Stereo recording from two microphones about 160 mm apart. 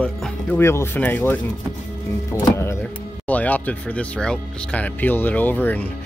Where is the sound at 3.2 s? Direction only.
10° left (ahead or behind).